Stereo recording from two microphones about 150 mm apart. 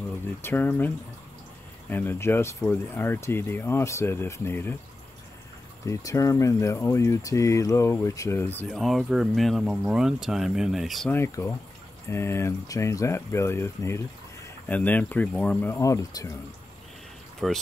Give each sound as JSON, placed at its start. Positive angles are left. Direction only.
{"t": 0.4, "sound": "speech", "side_deg": 15}
{"t": 5.9, "sound": "speech", "side_deg": 20}
{"t": 8.6, "sound": "speech", "side_deg": 0}
{"t": 11.1, "sound": "speech", "side_deg": 15}
{"t": 17.4, "sound": "speech", "side_deg": 0}